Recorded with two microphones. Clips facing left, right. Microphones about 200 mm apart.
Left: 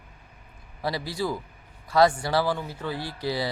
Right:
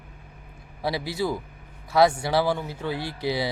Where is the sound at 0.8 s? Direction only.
15° right (ahead or behind).